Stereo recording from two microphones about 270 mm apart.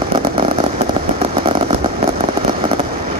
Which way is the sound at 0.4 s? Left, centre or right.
Centre.